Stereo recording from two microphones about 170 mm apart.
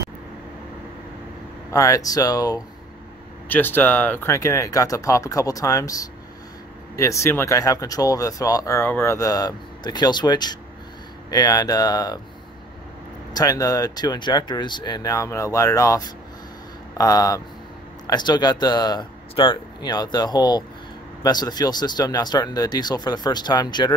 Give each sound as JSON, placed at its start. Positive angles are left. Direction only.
{"t": 1.7, "sound": "speech", "side_deg": 20}
{"t": 3.4, "sound": "speech", "side_deg": 10}
{"t": 13.3, "sound": "speech", "side_deg": 20}